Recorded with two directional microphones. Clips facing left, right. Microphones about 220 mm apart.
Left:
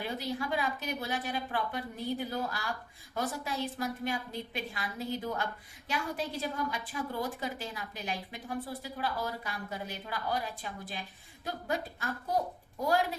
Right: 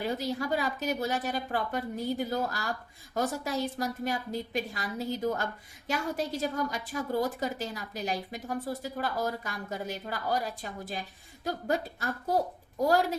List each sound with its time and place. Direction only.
0.0 s a woman's voice: 40° right (ahead or behind)